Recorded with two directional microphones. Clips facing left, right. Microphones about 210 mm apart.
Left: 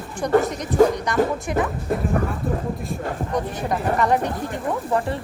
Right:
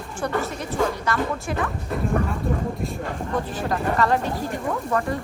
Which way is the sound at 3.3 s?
20° left (ahead or behind).